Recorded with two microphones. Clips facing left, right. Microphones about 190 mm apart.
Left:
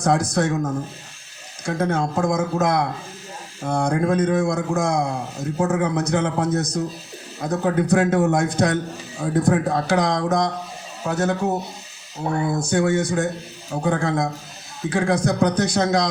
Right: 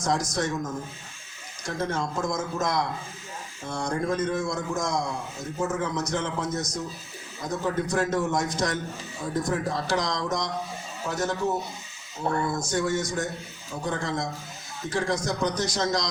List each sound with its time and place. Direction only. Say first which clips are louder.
0.0 s a man's voice: left 7 dB; 60° left (ahead or behind)